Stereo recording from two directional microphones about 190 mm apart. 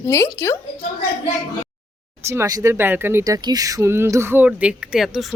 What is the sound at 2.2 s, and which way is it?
Speech, 15° right (ahead or behind).